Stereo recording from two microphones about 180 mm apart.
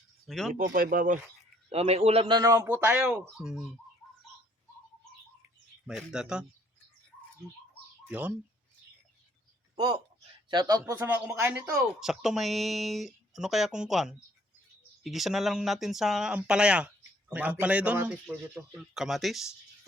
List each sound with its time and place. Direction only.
0.3 s speech: centre (ahead or behind)
0.5 s speech: 50° right (ahead or behind)
1.7 s a man's voice: 35° right (ahead or behind); by 3.7 s centre (ahead or behind)
5.8 s speech: centre (ahead or behind)
9.7 s a man's voice: 25° right (ahead or behind)
11.8 s speech: centre (ahead or behind)